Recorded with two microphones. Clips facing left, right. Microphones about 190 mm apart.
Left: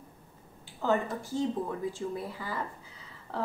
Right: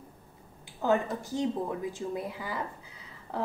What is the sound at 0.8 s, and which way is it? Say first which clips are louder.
Speech: right 2 dB; 15° right (ahead or behind).